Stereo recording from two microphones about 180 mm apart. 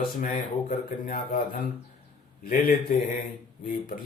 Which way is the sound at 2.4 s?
50° left (ahead or behind).